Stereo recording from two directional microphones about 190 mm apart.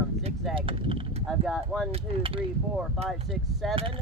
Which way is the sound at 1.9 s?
30° right (ahead or behind).